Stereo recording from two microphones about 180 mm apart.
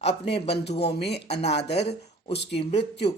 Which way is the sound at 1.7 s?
35° left (ahead or behind).